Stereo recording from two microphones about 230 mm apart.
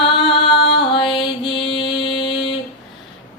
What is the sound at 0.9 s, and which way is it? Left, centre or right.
Mantra, left.